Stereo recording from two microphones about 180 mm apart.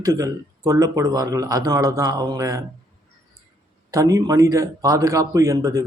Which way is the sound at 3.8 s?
20° right (ahead or behind).